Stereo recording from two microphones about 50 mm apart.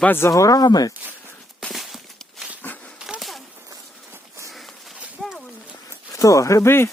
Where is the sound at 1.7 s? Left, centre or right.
Centre.